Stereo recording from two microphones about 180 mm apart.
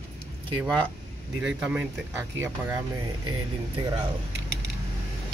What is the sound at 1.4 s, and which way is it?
Speech, 5° right (ahead or behind).